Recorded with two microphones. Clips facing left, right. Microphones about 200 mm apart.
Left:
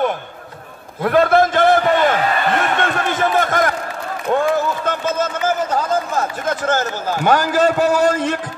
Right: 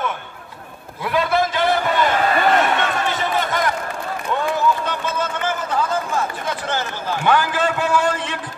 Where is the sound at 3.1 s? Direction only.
50° left (ahead or behind).